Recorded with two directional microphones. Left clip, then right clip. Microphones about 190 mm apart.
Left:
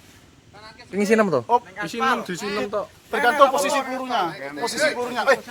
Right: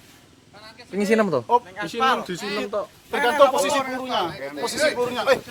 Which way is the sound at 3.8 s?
55° right (ahead or behind).